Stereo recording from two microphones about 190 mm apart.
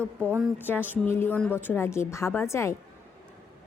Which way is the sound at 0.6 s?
10° left (ahead or behind).